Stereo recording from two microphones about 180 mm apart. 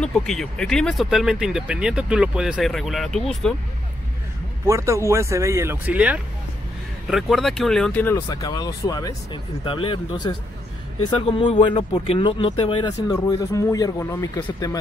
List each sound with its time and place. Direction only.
0.0 s speech: 5° left (ahead or behind)
4.6 s speech: 15° right (ahead or behind); by 8.2 s 10° left (ahead or behind)
8.3 s speech: 20° left (ahead or behind)
11.6 s speech: 25° left (ahead or behind)